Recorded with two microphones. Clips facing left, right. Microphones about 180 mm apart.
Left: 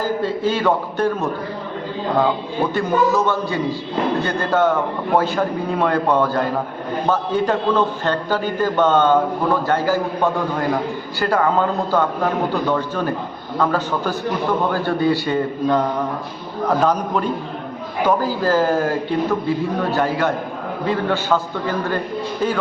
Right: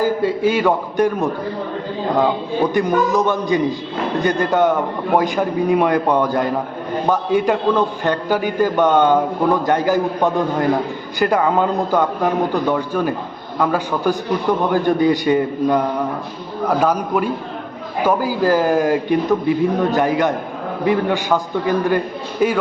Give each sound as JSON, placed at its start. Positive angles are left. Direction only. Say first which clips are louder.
{"t": 0.0, "sound": "a man's voice", "louder": "right 3 dB", "side_deg": -10}
{"t": 2.7, "sound": "a man's voice", "louder": "even", "side_deg": -15}